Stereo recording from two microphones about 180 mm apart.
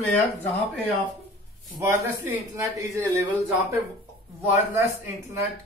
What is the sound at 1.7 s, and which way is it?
Speech, 15° right (ahead or behind).